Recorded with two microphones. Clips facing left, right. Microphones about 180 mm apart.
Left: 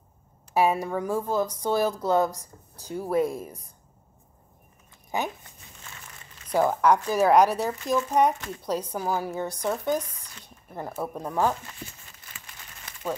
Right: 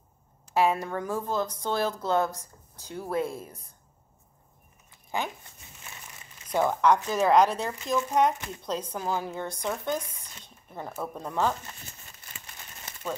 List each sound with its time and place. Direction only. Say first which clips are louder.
0.6 s a woman's voice: left 2 dB; 10° left (ahead or behind)
6.5 s a woman's voice: left 2 dB; 10° left (ahead or behind)